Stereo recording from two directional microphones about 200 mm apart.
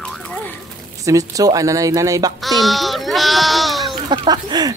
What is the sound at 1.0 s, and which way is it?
Speech, 15° right (ahead or behind).